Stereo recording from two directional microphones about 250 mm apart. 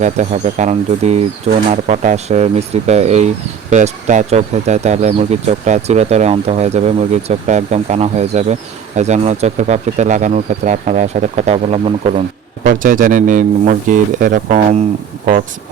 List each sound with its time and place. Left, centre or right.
0.0 s speech: right